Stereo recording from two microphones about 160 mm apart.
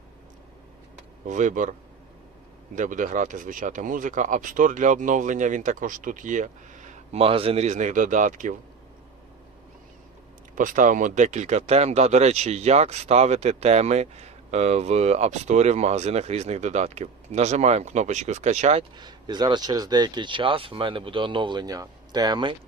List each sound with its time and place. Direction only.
1.3 s speech: 50° right (ahead or behind)
2.7 s speech: 55° right (ahead or behind)
10.5 s speech: 55° right (ahead or behind)
18.9 s speech: 25° right (ahead or behind)